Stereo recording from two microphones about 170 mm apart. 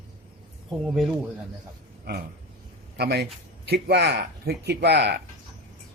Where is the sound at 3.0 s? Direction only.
75° right (ahead or behind).